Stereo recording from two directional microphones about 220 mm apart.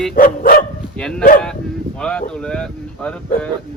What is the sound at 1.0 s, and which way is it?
Speech, 5° left (ahead or behind).